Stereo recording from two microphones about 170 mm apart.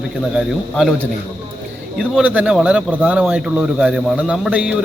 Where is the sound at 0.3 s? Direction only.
Centre (ahead or behind).